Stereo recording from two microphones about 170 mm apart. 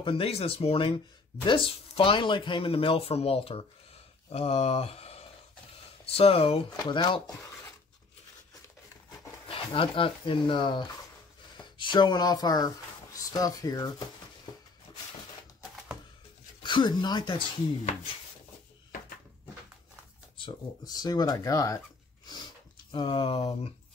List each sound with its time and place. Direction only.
0.0 s speech: 35° left (ahead or behind)
9.5 s speech: 30° left (ahead or behind)
14.9 s a sound: 30° left (ahead or behind)
16.6 s speech: 25° left (ahead or behind)
20.3 s speech: 25° left (ahead or behind)
22.8 s speech: 30° left (ahead or behind)